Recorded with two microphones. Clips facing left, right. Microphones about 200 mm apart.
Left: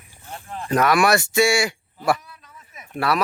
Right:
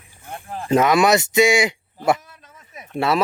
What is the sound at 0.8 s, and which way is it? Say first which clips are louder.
Speech: right 2 dB; 20° right (ahead or behind).